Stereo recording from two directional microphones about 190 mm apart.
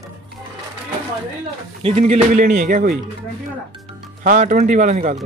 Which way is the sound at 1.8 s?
30° right (ahead or behind).